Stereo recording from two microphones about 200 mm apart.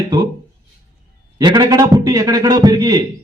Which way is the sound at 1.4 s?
20° right (ahead or behind).